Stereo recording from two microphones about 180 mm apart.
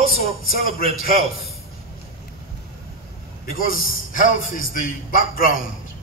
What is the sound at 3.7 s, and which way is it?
Speech, 50° left (ahead or behind).